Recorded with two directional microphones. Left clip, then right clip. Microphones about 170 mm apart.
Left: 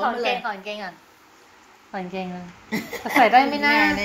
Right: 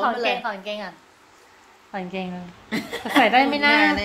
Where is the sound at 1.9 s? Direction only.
5° left (ahead or behind).